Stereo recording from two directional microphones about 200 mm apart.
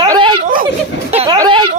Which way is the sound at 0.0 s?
20° right (ahead or behind).